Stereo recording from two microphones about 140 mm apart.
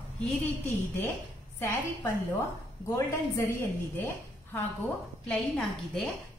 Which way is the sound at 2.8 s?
20° left (ahead or behind).